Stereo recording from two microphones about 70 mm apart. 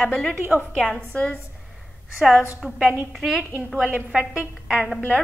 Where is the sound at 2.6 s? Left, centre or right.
Centre.